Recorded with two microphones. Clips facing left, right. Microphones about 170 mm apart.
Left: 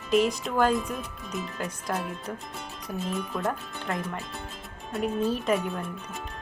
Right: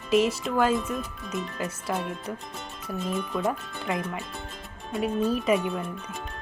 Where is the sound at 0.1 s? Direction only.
Centre (ahead or behind).